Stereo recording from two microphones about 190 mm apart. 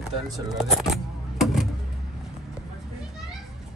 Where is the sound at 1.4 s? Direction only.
Centre (ahead or behind).